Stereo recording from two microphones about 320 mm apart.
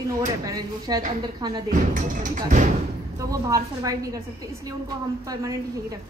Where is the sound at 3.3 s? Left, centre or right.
Centre.